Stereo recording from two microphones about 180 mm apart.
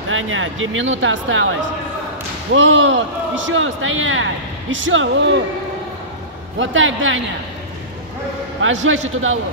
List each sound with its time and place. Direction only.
0.1 s a man's voice: 90° right
2.5 s a man's voice: 90° right
6.6 s a man's voice: 90° right
8.8 s a man's voice: 90° right